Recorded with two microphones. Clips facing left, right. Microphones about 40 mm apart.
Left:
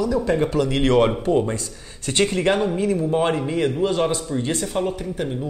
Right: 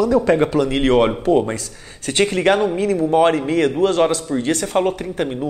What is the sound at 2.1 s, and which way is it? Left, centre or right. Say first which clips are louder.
Speech: right 3 dB; right.